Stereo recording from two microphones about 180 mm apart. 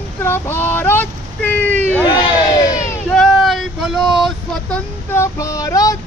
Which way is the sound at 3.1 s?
Centre (ahead or behind).